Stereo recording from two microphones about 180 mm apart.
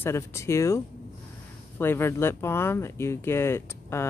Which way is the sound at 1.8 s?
15° left (ahead or behind).